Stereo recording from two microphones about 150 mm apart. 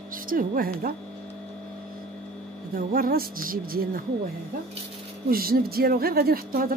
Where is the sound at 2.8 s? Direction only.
70° right (ahead or behind).